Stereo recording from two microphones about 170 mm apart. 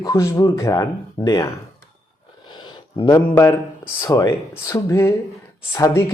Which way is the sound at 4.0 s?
20° left (ahead or behind).